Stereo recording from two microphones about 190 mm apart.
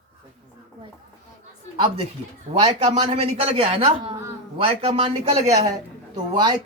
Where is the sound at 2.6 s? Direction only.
35° right (ahead or behind).